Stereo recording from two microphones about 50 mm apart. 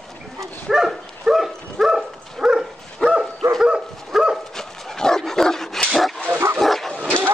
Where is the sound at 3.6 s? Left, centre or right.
Centre.